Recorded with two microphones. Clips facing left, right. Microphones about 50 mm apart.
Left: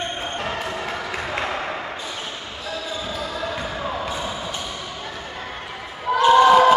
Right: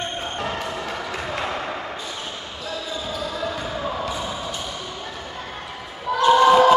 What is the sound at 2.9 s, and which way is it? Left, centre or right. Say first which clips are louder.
Basketball bounce: right 1 dB; centre.